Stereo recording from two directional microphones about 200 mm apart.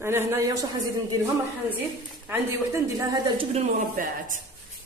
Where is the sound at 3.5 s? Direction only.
40° right (ahead or behind).